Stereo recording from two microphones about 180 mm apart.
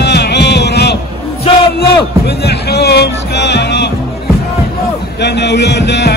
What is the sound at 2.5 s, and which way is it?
Music, 65° left (ahead or behind).